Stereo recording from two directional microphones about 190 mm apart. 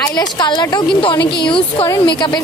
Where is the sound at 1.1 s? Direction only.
60° left (ahead or behind).